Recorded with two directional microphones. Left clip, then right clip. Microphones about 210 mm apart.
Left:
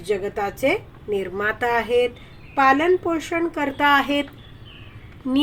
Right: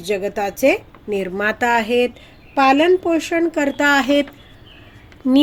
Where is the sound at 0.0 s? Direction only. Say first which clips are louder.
Right 3 dB; 50° right (ahead or behind).